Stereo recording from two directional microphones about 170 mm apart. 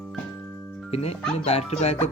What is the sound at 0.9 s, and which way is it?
Speech, 35° left (ahead or behind).